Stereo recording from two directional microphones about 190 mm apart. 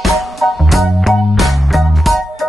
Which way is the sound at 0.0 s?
Centre (ahead or behind).